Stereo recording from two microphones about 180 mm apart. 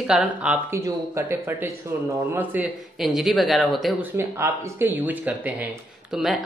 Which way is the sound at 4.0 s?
15° right (ahead or behind).